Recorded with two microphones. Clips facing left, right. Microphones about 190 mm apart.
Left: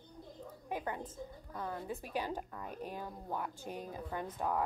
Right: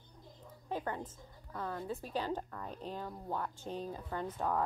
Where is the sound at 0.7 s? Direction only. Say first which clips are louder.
Right 1 dB; 15° left (ahead or behind).